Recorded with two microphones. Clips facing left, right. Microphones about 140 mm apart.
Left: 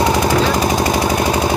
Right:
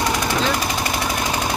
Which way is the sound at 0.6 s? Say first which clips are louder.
Left 8 dB; 40° left (ahead or behind).